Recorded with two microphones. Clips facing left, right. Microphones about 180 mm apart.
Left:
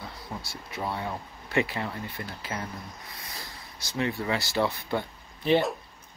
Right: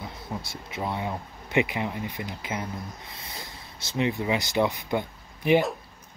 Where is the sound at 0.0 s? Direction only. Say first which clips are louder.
Right 3 dB; 20° right (ahead or behind).